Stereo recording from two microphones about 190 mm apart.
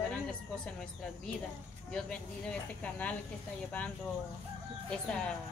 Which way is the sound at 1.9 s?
5° left (ahead or behind).